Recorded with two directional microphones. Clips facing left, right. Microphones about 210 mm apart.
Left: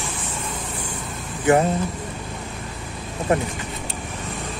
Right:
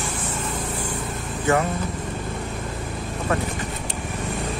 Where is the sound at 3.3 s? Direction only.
20° left (ahead or behind).